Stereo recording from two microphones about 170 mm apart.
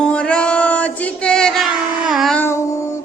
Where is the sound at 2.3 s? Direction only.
15° left (ahead or behind).